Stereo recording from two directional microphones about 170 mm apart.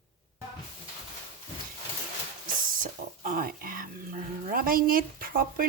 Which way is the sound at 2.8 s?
50° right (ahead or behind).